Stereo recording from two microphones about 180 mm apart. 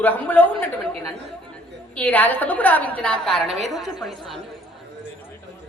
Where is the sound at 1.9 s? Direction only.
10° left (ahead or behind).